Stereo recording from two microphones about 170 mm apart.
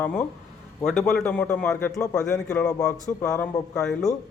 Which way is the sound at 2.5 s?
5° left (ahead or behind).